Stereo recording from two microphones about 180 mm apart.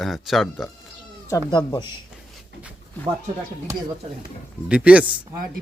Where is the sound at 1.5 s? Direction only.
25° left (ahead or behind).